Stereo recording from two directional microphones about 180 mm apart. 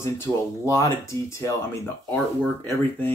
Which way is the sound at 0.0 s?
15° left (ahead or behind).